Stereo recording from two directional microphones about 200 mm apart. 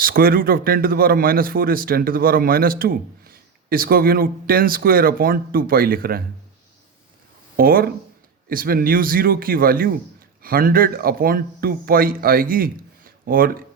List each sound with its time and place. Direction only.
0.0 s a man's voice: 45° right (ahead or behind)
7.5 s a man's voice: 50° right (ahead or behind)